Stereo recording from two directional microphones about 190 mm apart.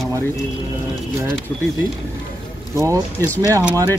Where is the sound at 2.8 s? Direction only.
15° right (ahead or behind).